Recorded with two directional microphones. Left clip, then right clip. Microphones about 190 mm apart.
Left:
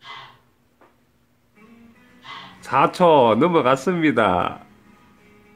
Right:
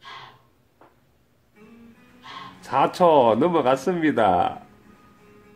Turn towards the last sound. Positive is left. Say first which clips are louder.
# left 1 dB
turn(degrees=50)  # may be behind; listen again after turning